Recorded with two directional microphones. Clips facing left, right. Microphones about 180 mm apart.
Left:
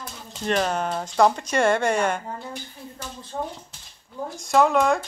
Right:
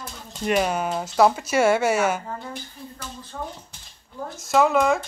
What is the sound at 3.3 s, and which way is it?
Speech, 35° left (ahead or behind).